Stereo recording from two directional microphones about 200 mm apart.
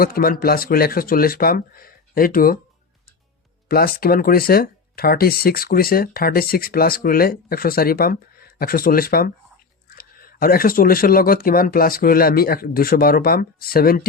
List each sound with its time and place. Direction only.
0.0 s speech: 45° left (ahead or behind)
3.7 s speech: 50° left (ahead or behind)